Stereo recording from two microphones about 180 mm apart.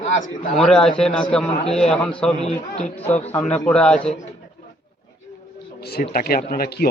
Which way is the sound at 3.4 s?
5° left (ahead or behind).